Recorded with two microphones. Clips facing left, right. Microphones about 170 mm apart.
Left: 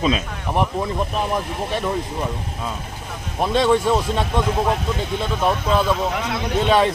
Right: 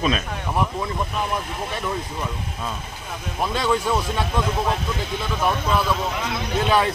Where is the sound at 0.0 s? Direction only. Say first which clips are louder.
Left 2 dB; 20° left (ahead or behind).